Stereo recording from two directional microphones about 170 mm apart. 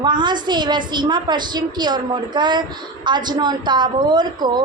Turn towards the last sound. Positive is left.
turn(degrees=-25)  # may be behind; listen again after turning